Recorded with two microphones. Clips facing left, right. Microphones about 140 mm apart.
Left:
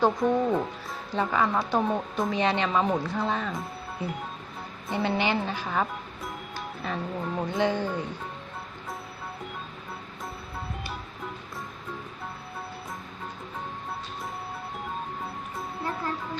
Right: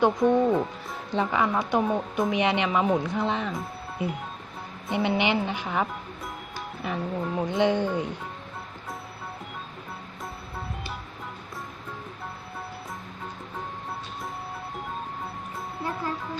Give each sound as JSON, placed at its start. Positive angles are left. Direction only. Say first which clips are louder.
{"t": 0.0, "sound": "a woman's voice", "louder": "right 3 dB", "side_deg": -15}
{"t": 4.9, "sound": "a woman's voice", "louder": "right 2 dB", "side_deg": -20}
{"t": 6.8, "sound": "a woman's voice", "louder": "right 2 dB", "side_deg": -15}